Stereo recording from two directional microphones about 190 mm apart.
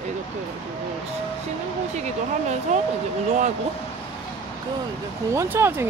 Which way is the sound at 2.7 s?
35° right (ahead or behind).